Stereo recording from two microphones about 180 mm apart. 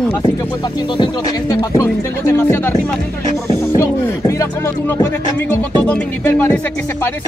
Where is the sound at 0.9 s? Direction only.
25° left (ahead or behind).